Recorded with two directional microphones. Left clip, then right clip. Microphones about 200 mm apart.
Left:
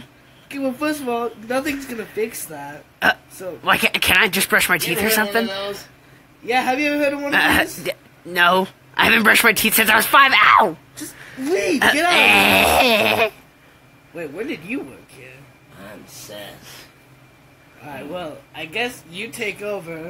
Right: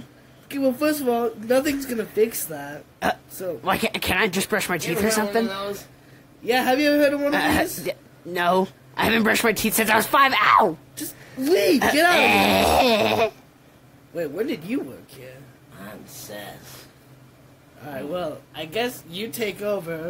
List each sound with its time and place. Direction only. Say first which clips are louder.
0.5 s speech: right 1 dB; 45° right (ahead or behind)
3.0 s speech: left 6 dB; centre (ahead or behind)
6.4 s speech: left 1 dB; 40° right (ahead or behind)
7.2 s speech: left 4 dB; centre (ahead or behind)
11.4 s speech: right 1 dB; 40° right (ahead or behind)
12.1 s speech: left 6 dB; centre (ahead or behind)
14.1 s speech: right 2 dB; 45° right (ahead or behind)
18.1 s speech: right 2 dB; 45° right (ahead or behind)